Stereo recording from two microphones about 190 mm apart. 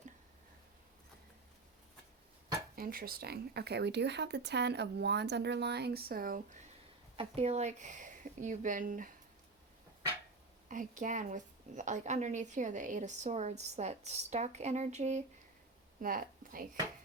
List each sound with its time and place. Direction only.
2.7 s speech: 50° right (ahead or behind)
7.2 s a woman's voice: 35° right (ahead or behind)
10.7 s a woman's voice: 45° right (ahead or behind)
16.0 s speech: 50° right (ahead or behind)